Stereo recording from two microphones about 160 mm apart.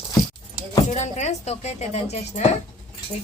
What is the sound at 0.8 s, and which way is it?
Speech, 45° left (ahead or behind).